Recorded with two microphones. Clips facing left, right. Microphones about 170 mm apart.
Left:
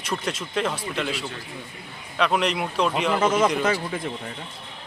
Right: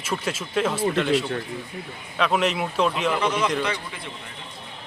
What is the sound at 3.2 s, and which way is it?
Speech, 45° left (ahead or behind).